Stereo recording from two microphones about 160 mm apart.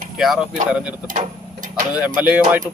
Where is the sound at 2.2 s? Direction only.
10° right (ahead or behind).